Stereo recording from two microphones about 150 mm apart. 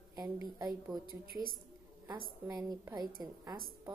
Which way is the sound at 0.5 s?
25° right (ahead or behind).